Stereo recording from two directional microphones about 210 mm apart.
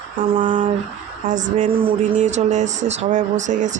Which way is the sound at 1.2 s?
35° right (ahead or behind).